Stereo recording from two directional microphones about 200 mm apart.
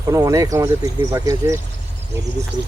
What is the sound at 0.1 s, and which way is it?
Speech, 15° right (ahead or behind).